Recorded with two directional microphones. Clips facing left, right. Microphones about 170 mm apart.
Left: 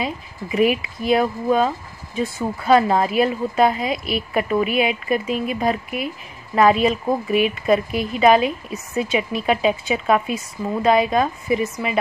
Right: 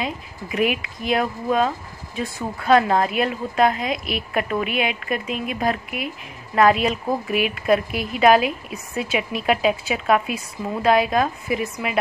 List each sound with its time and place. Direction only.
0.0 s a woman's voice: centre (ahead or behind)